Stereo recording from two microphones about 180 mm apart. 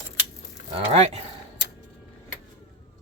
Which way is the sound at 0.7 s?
35° right (ahead or behind).